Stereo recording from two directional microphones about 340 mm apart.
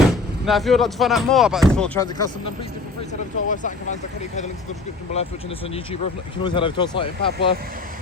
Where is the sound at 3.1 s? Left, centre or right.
Left.